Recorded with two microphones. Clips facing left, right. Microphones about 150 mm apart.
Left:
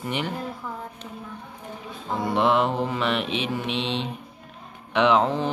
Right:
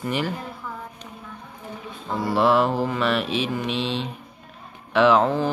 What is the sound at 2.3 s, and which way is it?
Mantra, 20° left (ahead or behind).